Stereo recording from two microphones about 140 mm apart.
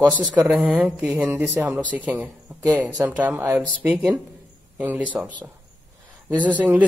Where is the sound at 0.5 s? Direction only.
10° right (ahead or behind).